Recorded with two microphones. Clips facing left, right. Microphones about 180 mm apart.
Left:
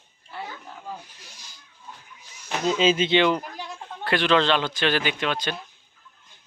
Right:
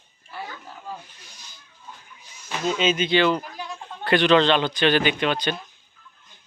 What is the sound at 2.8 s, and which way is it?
Speech, 30° left (ahead or behind).